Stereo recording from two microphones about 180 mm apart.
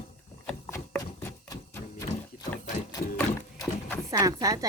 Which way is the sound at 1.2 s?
15° left (ahead or behind).